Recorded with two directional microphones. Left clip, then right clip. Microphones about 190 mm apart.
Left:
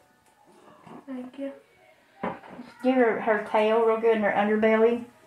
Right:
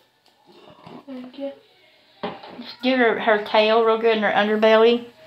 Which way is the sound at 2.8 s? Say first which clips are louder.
Right 4 dB; 40° right (ahead or behind).